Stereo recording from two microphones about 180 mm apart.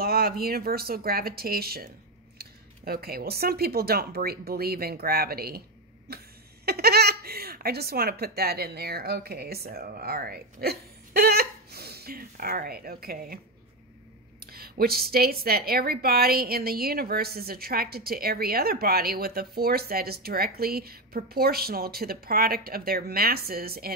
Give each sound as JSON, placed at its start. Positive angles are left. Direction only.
{"t": 0.0, "sound": "a woman's voice", "side_deg": -60}
{"t": 14.5, "sound": "a woman's voice", "side_deg": -60}